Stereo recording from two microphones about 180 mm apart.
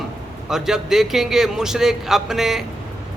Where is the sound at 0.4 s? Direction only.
Centre (ahead or behind).